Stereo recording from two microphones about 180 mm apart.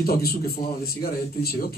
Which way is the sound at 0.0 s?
55° left (ahead or behind).